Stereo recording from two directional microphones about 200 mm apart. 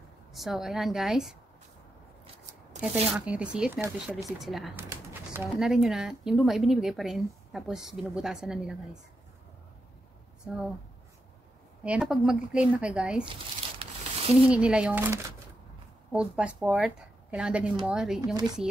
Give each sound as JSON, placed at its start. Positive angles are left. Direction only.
{"t": 0.3, "sound": "speech", "side_deg": 0}
{"t": 3.2, "sound": "speech", "side_deg": -5}
{"t": 10.4, "sound": "speech", "side_deg": -5}
{"t": 11.8, "sound": "speech", "side_deg": -5}
{"t": 13.2, "sound": "crumpling", "side_deg": -25}
{"t": 14.3, "sound": "speech", "side_deg": -5}
{"t": 18.2, "sound": "speech", "side_deg": -20}